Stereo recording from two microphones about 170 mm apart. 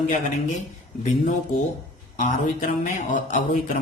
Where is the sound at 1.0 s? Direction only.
45° left (ahead or behind).